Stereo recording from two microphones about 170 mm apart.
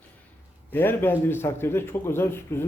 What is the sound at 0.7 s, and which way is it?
A man's voice, 10° left (ahead or behind).